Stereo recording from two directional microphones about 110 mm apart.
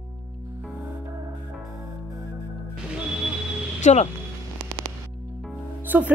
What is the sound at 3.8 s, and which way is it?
Speech, 90° left.